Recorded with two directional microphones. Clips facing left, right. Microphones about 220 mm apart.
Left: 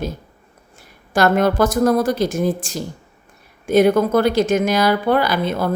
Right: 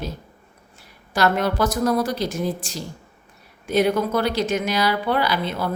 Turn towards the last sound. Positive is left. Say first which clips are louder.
# left 4 dB
turn(degrees=45)  # may be behind; listen again after turning